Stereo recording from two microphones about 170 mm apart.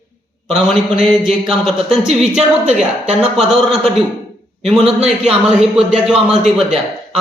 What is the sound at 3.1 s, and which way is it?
A man's voice, 5° right (ahead or behind).